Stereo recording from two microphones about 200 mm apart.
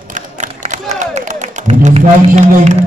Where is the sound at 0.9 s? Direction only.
35° right (ahead or behind).